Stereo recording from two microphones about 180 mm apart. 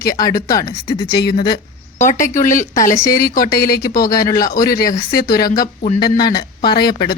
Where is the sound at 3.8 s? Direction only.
20° left (ahead or behind).